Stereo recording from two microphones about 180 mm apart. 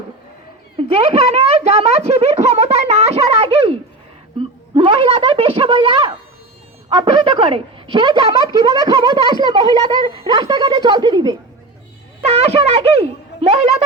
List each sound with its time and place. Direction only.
0.8 s speech: 30° right (ahead or behind)
12.2 s speech: 35° right (ahead or behind)